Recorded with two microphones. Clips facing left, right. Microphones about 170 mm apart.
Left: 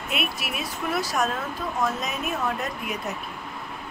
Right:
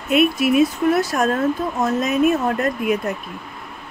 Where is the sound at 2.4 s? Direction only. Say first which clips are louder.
Right 9 dB; 60° right (ahead or behind).